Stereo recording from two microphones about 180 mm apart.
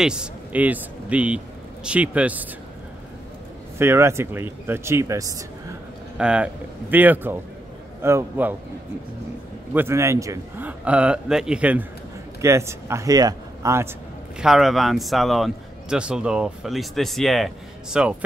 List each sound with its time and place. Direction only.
0.0 s a man's voice: 5° right (ahead or behind)
3.7 s a man's voice: 15° right (ahead or behind)
6.1 s a man's voice: 5° right (ahead or behind)
9.8 s a man's voice: 15° right (ahead or behind)
14.4 s a man's voice: centre (ahead or behind)